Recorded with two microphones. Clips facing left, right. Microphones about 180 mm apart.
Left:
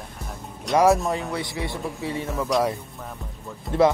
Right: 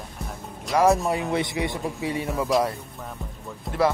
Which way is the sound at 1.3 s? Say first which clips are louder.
Right 4 dB; 20° right (ahead or behind).